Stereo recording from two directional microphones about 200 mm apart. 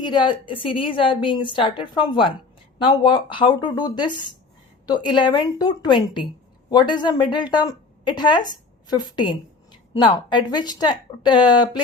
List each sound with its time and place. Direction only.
0.0 s a woman's voice: 20° left (ahead or behind)